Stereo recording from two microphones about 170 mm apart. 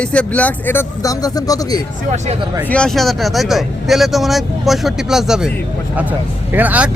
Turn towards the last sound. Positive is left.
turn(degrees=-10)  # may be behind; listen again after turning